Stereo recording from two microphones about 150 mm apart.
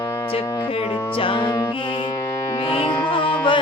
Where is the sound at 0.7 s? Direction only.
40° left (ahead or behind).